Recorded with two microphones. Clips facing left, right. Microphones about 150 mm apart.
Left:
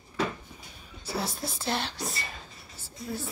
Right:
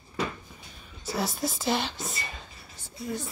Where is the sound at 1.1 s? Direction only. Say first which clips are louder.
Right 3 dB; centre (ahead or behind).